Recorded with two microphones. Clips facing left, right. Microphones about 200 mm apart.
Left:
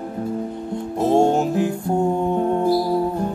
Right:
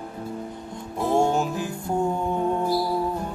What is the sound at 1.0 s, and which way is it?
Music, 25° left (ahead or behind).